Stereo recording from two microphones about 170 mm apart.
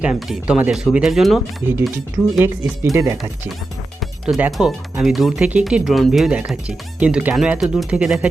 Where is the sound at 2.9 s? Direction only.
15° right (ahead or behind).